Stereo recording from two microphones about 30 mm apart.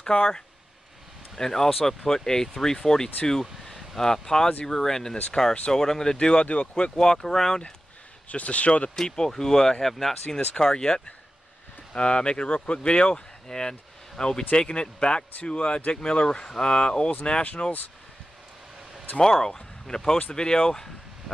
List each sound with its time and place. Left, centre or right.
0.1 s speech: left
1.4 s speech: centre
5.7 s speech: centre
6.1 s speech: left
6.4 s speech: left
7.0 s speech: centre
8.3 s speech: left
8.9 s speech: centre
11.9 s speech: left
13.5 s speech: left
19.2 s speech: centre